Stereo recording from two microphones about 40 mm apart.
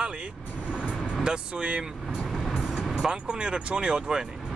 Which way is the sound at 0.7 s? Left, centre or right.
Right.